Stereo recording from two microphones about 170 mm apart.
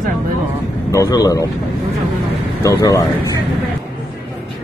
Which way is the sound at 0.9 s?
20° left (ahead or behind).